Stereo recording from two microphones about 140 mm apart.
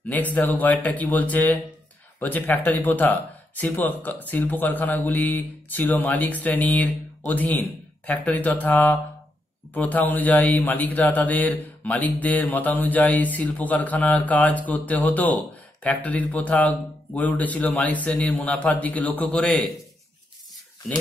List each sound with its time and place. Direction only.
0.1 s speech: 10° left (ahead or behind)